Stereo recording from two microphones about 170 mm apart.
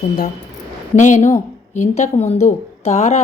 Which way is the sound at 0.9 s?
45° left (ahead or behind).